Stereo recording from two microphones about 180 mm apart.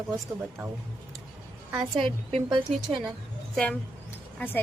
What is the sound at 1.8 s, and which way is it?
Speech, 25° right (ahead or behind).